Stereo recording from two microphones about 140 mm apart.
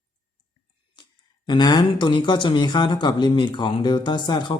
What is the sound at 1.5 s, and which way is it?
Speech, 30° left (ahead or behind).